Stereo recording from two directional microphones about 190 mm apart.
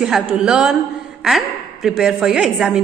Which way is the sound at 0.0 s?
5° right (ahead or behind).